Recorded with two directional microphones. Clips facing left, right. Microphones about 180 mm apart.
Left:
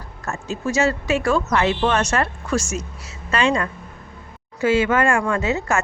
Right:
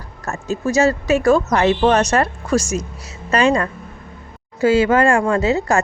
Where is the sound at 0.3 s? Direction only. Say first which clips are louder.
Right 4 dB; 40° right (ahead or behind).